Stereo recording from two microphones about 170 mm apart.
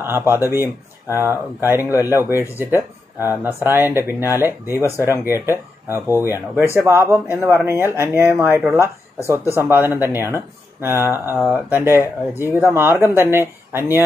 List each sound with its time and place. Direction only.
0.0 s speech: 15° right (ahead or behind)
9.6 s speech: 15° right (ahead or behind)